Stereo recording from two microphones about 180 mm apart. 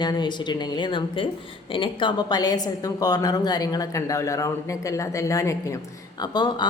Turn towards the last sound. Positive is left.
turn(degrees=25)  # may be behind; listen again after turning